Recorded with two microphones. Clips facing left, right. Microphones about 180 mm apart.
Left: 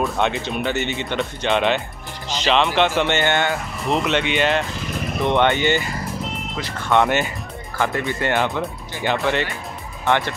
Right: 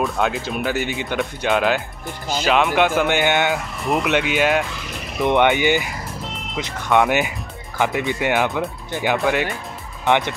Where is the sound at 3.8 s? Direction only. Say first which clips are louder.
Even; 5° right (ahead or behind).